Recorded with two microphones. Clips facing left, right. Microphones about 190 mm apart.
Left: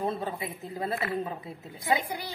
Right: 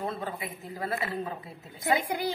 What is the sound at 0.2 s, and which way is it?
Speech, 25° left (ahead or behind).